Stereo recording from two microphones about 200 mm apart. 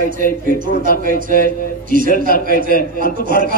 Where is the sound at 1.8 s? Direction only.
45° right (ahead or behind).